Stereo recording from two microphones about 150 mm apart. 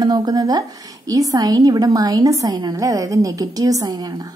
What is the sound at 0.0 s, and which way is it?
A woman's voice, 25° right (ahead or behind).